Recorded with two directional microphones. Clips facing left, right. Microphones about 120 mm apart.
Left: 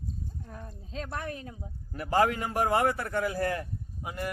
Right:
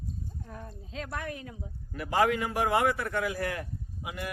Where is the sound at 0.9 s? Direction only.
35° left (ahead or behind).